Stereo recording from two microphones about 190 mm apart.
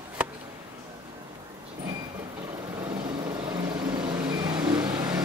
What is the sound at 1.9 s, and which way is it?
Vehicle, 15° right (ahead or behind).